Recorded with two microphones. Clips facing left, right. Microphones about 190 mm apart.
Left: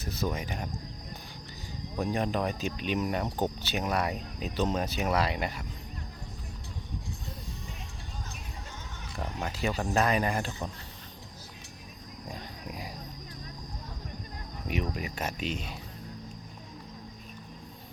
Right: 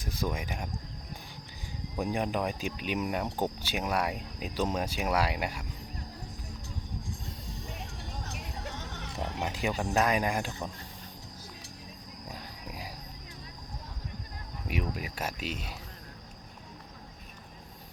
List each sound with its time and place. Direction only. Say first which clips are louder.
0.0 s speech: left 1 dB; 10° right (ahead or behind)
2.0 s speech: left 1 dB; 15° right (ahead or behind)
8.3 s music: right 4 dB; 75° right (ahead or behind)
9.4 s speech: left 1 dB; 15° right (ahead or behind)
12.3 s wild animals: left 3 dB; 5° right (ahead or behind)
14.7 s speech: left 2 dB; 5° right (ahead or behind)